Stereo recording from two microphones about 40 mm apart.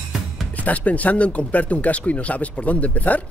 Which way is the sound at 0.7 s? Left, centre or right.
Left.